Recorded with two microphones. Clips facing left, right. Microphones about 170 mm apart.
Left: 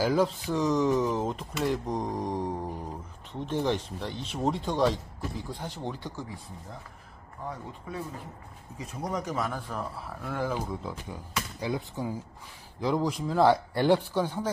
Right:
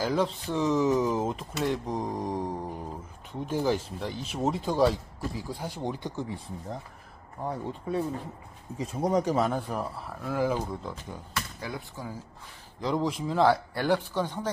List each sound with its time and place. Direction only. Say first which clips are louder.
0.0 s speech: left 2 dB; 5° left (ahead or behind); by 6.2 s 15° right (ahead or behind)
7.4 s speech: right 6 dB; 35° right (ahead or behind)
9.9 s speech: right 3 dB; centre (ahead or behind)
11.3 s speech: left 5 dB; 15° left (ahead or behind)
12.8 s speech: left 1 dB; centre (ahead or behind)
13.9 s speech: left 1 dB; 10° left (ahead or behind)